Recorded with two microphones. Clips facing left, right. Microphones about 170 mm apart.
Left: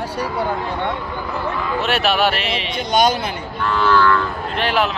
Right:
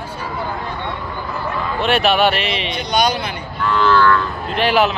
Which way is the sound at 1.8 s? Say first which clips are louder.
Right 3 dB; 5° left (ahead or behind).